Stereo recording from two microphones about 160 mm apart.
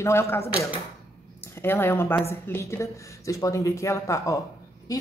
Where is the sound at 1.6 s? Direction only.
15° left (ahead or behind).